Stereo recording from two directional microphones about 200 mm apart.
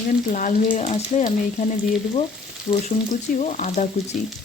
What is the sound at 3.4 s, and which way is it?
Speech, 40° left (ahead or behind).